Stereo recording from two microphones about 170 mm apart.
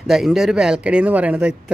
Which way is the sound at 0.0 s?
Centre (ahead or behind).